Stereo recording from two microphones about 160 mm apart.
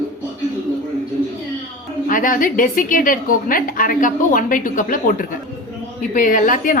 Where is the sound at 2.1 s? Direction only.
60° left (ahead or behind).